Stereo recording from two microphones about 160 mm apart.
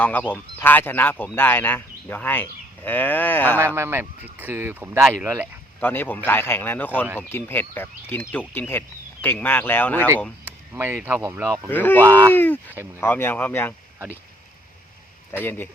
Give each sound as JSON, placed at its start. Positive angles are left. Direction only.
{"t": 0.0, "sound": "speech", "side_deg": 10}
{"t": 3.8, "sound": "speech", "side_deg": -15}
{"t": 5.8, "sound": "speech", "side_deg": 10}
{"t": 10.4, "sound": "speech", "side_deg": -15}
{"t": 11.7, "sound": "speech", "side_deg": 10}
{"t": 12.0, "sound": "speech", "side_deg": -15}
{"t": 12.3, "sound": "speech", "side_deg": 10}
{"t": 15.3, "sound": "speech", "side_deg": 15}